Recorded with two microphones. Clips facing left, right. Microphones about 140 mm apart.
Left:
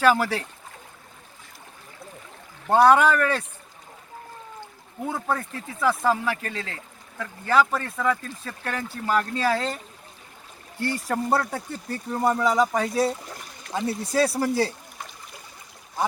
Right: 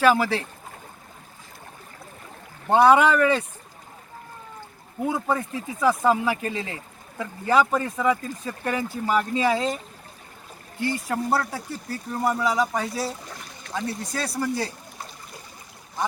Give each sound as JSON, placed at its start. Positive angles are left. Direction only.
{"t": 0.0, "sound": "speech", "side_deg": -5}
{"t": 2.6, "sound": "speech", "side_deg": -10}
{"t": 5.0, "sound": "speech", "side_deg": -10}
{"t": 6.2, "sound": "speech", "side_deg": -15}
{"t": 10.8, "sound": "speech", "side_deg": -5}
{"t": 12.1, "sound": "speech", "side_deg": 25}
{"t": 12.4, "sound": "speech", "side_deg": 0}
{"t": 13.7, "sound": "speech", "side_deg": 10}